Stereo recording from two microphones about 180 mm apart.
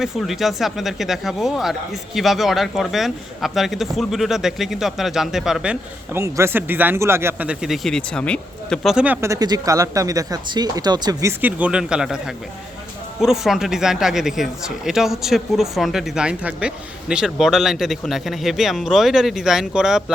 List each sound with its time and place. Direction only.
0.0 s speech: centre (ahead or behind)
6.1 s speech: 15° right (ahead or behind)
9.2 s speech: 20° right (ahead or behind); by 12.2 s 5° right (ahead or behind)
13.2 s speech: centre (ahead or behind)